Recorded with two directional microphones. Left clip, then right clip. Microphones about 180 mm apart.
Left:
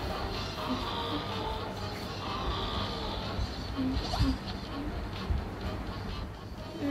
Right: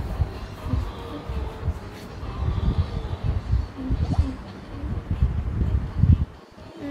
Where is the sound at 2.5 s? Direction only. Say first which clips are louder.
Left 1 dB; 30° left (ahead or behind).